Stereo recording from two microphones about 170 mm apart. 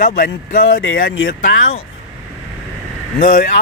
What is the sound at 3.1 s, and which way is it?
Speech, 50° left (ahead or behind).